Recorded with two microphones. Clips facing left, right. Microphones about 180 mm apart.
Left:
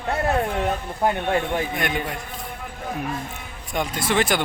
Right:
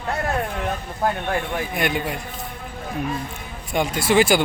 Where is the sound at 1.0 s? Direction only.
25° left (ahead or behind).